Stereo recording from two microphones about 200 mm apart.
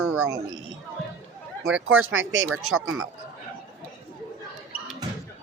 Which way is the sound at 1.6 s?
75° right (ahead or behind).